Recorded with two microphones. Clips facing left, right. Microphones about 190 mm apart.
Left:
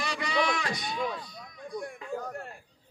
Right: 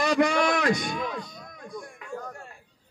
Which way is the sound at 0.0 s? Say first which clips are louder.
Right 7 dB; 45° right (ahead or behind).